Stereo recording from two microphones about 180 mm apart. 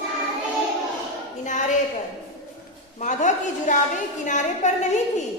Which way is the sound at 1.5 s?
40° left (ahead or behind).